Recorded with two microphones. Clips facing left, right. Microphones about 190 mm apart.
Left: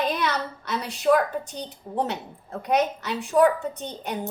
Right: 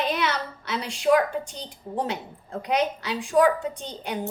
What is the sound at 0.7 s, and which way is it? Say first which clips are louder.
Speech: even; 10° right (ahead or behind).